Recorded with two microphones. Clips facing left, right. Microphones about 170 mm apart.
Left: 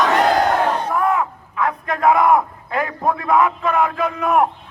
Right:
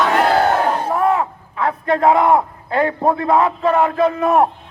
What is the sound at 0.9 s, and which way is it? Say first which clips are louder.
Speech: right 2 dB; 30° right (ahead or behind).